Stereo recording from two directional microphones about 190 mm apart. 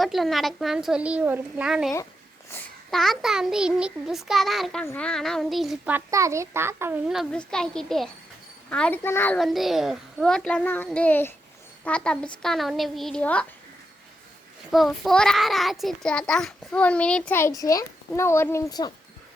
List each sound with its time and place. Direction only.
0.0 s a child's voice: centre (ahead or behind)
7.1 s a child's voice: centre (ahead or behind)
14.7 s a child's voice: centre (ahead or behind); by 18.9 s 20° left (ahead or behind)